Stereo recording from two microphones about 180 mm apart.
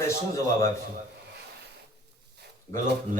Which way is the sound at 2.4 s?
65° right (ahead or behind).